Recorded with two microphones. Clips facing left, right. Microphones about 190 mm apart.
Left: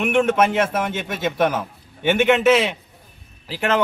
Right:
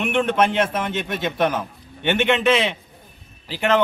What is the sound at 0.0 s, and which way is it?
A man's voice, 5° left (ahead or behind).